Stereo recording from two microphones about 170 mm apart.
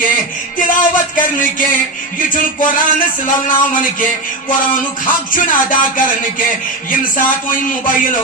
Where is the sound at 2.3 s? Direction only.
50° left (ahead or behind).